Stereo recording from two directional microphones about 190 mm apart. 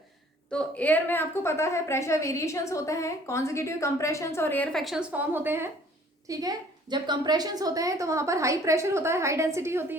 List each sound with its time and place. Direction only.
0.5 s a woman's voice: 5° left (ahead or behind); by 10.0 s 15° right (ahead or behind)